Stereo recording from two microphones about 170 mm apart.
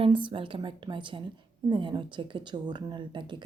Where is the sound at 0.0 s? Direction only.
30° right (ahead or behind).